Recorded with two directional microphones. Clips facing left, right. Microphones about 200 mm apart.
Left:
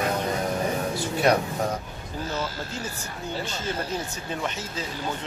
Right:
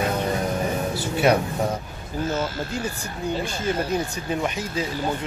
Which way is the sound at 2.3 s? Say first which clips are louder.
Right 5 dB; 20° right (ahead or behind).